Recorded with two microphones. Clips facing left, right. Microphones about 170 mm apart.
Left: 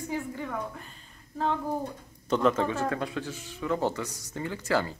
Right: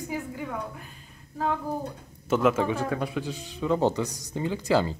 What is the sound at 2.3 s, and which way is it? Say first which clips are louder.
Speech: right 2 dB; 5° right (ahead or behind).